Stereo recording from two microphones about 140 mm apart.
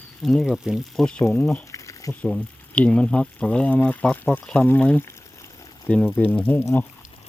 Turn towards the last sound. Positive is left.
turn(degrees=15)  # may be behind; listen again after turning